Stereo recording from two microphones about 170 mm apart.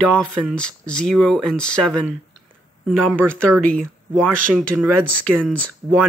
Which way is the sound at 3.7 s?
5° left (ahead or behind).